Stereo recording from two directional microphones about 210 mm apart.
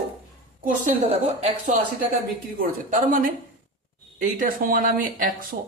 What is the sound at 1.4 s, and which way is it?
Speech, 40° right (ahead or behind).